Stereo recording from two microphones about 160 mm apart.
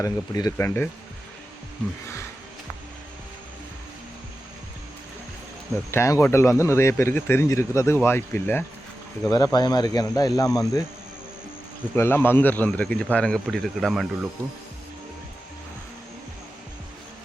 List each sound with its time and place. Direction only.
0.0 s speech: 20° left (ahead or behind)
5.9 s speech: 15° left (ahead or behind)
9.3 s speech: 25° left (ahead or behind)
11.9 s speech: 15° left (ahead or behind)